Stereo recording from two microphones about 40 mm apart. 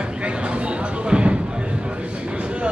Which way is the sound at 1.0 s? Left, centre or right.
Right.